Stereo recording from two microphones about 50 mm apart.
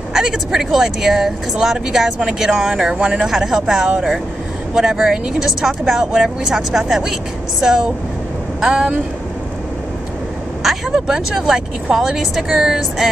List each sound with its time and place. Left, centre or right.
0.1 s speech: centre
5.0 s speech: centre
10.9 s speech: centre